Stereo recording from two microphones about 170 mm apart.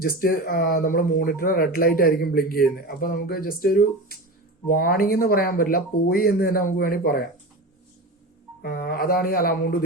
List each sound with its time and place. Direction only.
0.0 s speech: 60° left (ahead or behind)
8.6 s speech: 60° left (ahead or behind)